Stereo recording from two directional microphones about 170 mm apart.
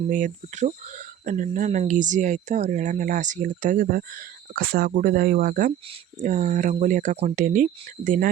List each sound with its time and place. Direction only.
0.1 s speech: 50° right (ahead or behind)